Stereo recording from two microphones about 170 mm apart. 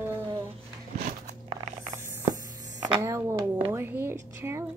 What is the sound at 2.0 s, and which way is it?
Mechanisms, 15° right (ahead or behind).